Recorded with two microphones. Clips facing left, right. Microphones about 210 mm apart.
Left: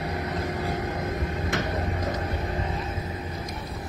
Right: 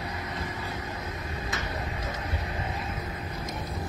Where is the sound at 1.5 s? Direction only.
55° left (ahead or behind).